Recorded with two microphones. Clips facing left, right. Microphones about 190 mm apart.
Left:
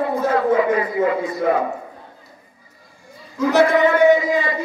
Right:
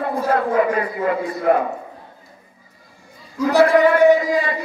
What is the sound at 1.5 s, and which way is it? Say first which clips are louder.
Speech: right 3 dB; 60° right (ahead or behind).